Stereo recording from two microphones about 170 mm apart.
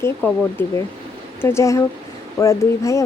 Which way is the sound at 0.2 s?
10° left (ahead or behind).